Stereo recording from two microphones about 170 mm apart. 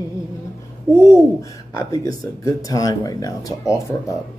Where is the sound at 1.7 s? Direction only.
20° left (ahead or behind).